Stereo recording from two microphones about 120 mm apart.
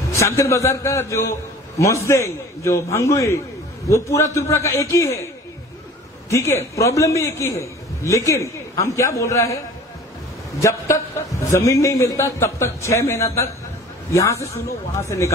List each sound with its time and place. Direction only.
0.1 s a man's voice: 25° left (ahead or behind)
6.3 s a man's voice: 25° left (ahead or behind)
10.6 s a man's voice: 25° left (ahead or behind)